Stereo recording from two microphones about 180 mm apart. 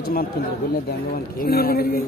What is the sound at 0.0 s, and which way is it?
A man's voice, 55° left (ahead or behind).